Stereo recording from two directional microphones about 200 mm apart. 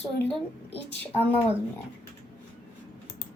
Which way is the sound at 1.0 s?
10° left (ahead or behind).